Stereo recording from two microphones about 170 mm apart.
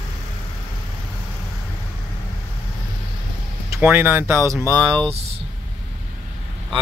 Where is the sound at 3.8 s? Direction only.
10° right (ahead or behind).